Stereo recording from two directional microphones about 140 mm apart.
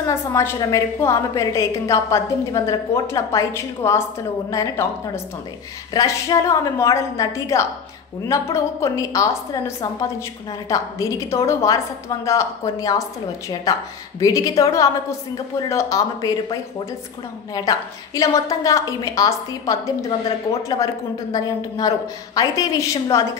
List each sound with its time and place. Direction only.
0.0 s a woman's voice: 20° left (ahead or behind)
17.6 s a woman's voice: 25° left (ahead or behind)